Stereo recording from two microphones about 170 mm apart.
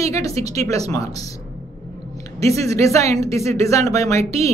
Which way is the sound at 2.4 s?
20° left (ahead or behind).